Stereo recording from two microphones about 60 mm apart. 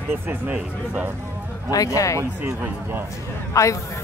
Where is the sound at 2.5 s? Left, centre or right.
Right.